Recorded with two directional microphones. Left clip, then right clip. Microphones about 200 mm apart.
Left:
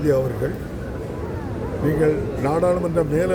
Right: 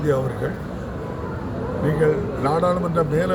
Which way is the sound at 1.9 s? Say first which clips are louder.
Even; 10° left (ahead or behind).